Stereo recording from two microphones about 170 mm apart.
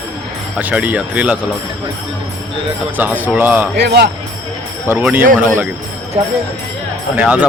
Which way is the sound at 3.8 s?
75° right (ahead or behind).